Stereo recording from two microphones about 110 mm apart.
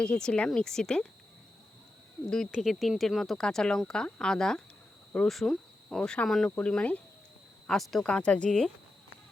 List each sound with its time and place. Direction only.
0.0 s speech: 10° left (ahead or behind)
2.5 s speech: centre (ahead or behind)